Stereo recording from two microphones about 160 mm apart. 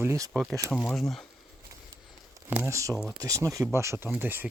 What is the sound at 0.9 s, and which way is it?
Speech, centre (ahead or behind).